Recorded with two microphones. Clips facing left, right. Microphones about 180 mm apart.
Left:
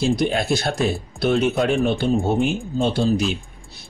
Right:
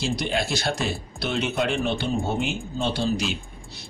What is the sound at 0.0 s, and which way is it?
A man's voice, 50° left (ahead or behind).